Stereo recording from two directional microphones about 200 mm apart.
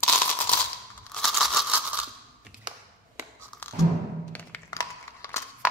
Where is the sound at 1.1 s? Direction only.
Centre (ahead or behind).